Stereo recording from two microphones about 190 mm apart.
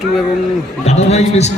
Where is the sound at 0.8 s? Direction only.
35° left (ahead or behind).